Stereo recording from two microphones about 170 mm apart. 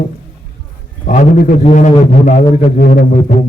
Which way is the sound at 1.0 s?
60° left (ahead or behind).